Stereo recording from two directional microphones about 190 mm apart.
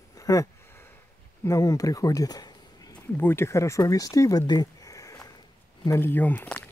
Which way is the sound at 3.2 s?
10° left (ahead or behind).